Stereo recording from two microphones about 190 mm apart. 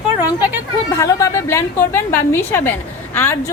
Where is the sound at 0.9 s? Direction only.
15° left (ahead or behind).